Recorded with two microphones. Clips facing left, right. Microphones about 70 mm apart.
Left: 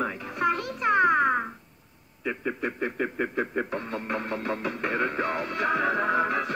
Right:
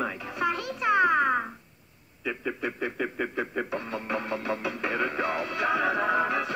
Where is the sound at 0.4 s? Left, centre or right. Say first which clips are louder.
Left 2 dB; left.